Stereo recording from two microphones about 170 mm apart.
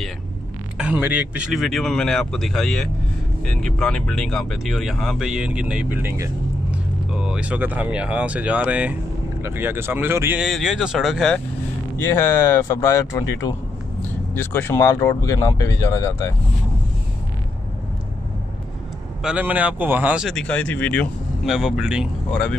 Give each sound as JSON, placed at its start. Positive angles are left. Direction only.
{"t": 0.7, "sound": "speech", "side_deg": -5}
{"t": 7.1, "sound": "speech", "side_deg": -5}
{"t": 12.0, "sound": "speech", "side_deg": 15}
{"t": 19.2, "sound": "speech", "side_deg": -10}
{"t": 21.5, "sound": "speech", "side_deg": -5}
{"t": 22.3, "sound": "speech", "side_deg": 5}